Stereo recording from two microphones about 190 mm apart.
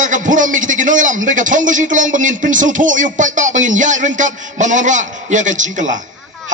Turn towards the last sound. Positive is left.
turn(degrees=-40)  # may be behind; listen again after turning